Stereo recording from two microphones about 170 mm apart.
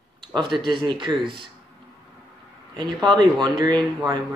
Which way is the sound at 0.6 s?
25° right (ahead or behind).